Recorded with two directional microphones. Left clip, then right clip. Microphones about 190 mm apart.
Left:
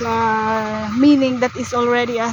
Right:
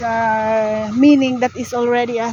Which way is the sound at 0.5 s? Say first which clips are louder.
Right 4 dB; 30° right (ahead or behind).